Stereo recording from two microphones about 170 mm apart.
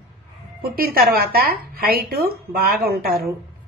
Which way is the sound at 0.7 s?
60° right (ahead or behind).